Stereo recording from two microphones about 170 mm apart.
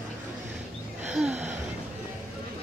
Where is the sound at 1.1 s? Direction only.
5° right (ahead or behind).